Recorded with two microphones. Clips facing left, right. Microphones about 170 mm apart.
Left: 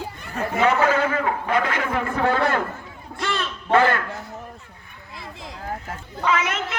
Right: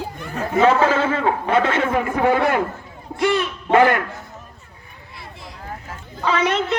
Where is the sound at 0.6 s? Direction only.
30° right (ahead or behind).